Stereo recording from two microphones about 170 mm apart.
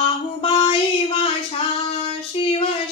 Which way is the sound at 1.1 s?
35° left (ahead or behind).